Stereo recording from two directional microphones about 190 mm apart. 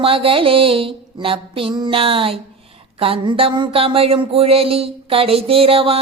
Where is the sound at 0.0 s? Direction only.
30° right (ahead or behind).